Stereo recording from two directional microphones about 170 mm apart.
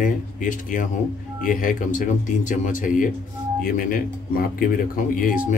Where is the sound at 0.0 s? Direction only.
50° left (ahead or behind).